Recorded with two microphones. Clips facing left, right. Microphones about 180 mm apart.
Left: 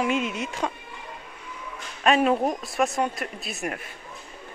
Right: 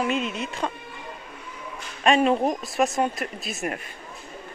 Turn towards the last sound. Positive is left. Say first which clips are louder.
# right 2 dB
turn(degrees=0)  # may be behind; listen again after turning